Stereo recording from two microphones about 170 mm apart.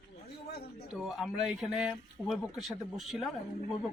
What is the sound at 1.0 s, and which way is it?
A man's voice, centre (ahead or behind).